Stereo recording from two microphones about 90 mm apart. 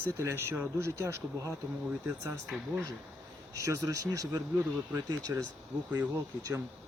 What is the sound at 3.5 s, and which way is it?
Speech, 35° right (ahead or behind).